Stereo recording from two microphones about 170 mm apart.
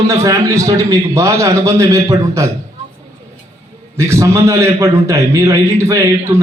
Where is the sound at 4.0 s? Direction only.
15° right (ahead or behind).